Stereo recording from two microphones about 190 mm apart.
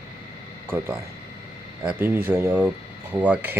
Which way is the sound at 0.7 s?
15° right (ahead or behind).